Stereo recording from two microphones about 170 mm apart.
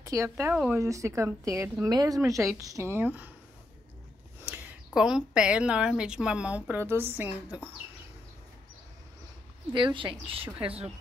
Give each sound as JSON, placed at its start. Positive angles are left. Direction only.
{"t": 0.0, "sound": "a woman's voice", "side_deg": -20}
{"t": 4.5, "sound": "a woman's voice", "side_deg": -5}
{"t": 9.7, "sound": "speech", "side_deg": -30}